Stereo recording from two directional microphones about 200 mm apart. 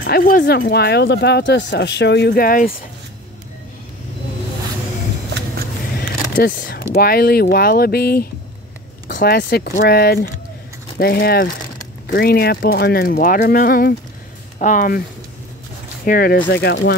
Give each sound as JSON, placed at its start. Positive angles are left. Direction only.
{"t": 0.0, "sound": "speech", "side_deg": 55}
{"t": 5.9, "sound": "a sound", "side_deg": 45}
{"t": 6.9, "sound": "speech", "side_deg": 50}
{"t": 16.1, "sound": "speech", "side_deg": 50}